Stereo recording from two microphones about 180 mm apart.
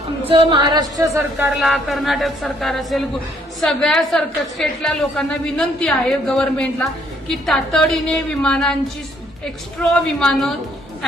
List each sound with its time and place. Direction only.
0.3 s speech: 30° right (ahead or behind)
1.5 s a woman's voice: centre (ahead or behind)
9.9 s a woman's voice: 5° left (ahead or behind)